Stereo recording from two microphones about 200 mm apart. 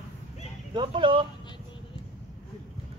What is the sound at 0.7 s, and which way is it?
Speech, 25° right (ahead or behind).